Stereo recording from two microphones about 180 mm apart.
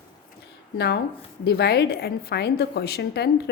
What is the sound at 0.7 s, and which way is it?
A woman's voice, 70° left (ahead or behind).